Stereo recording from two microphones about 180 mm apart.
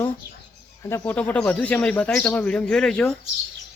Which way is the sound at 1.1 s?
10° left (ahead or behind).